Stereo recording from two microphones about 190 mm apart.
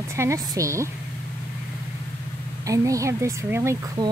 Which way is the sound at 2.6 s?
15° right (ahead or behind).